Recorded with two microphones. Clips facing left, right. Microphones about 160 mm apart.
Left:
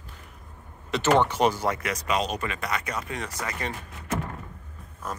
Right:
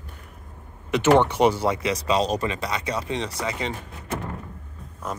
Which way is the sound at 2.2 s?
35° right (ahead or behind).